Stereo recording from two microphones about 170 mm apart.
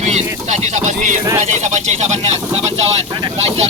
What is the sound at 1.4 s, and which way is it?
Speech, 45° right (ahead or behind).